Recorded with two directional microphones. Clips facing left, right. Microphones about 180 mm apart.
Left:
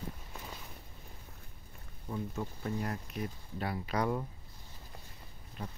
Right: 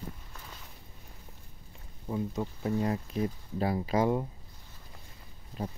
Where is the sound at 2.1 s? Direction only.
20° right (ahead or behind).